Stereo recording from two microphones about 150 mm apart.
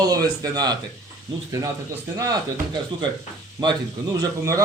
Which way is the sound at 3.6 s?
30° right (ahead or behind).